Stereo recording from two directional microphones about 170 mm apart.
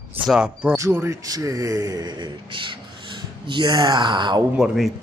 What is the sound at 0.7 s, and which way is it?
Speech, 15° right (ahead or behind).